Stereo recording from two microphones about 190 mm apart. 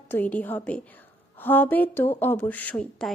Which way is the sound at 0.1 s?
10° left (ahead or behind).